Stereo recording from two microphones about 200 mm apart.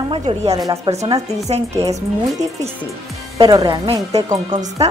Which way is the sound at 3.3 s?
20° right (ahead or behind).